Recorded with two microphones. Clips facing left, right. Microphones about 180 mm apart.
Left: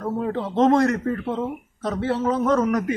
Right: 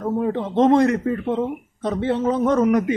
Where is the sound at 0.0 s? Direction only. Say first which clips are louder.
Right 3 dB; 15° right (ahead or behind).